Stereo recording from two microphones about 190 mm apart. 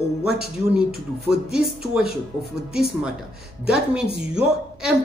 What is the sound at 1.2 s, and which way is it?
A man's voice, 5° right (ahead or behind).